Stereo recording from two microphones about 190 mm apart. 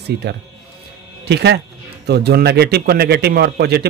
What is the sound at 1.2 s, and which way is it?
A man's voice, 60° right (ahead or behind).